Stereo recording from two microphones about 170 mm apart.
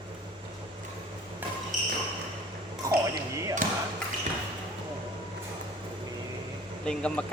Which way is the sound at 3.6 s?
50° right (ahead or behind).